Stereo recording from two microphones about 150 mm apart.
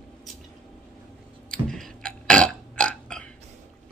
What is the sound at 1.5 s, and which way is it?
Burping, 5° left (ahead or behind).